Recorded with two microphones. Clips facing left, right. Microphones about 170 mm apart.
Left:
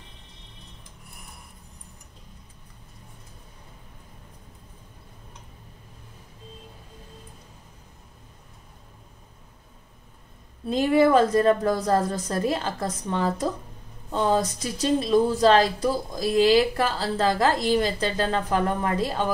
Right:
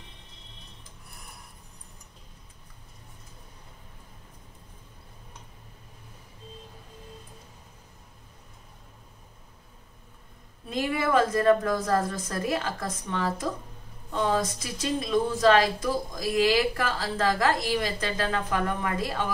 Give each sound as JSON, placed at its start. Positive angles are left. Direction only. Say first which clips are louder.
{"t": 10.7, "sound": "speech", "louder": "left 7 dB", "side_deg": 30}